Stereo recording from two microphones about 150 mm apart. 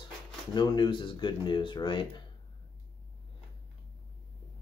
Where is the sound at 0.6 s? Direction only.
30° left (ahead or behind).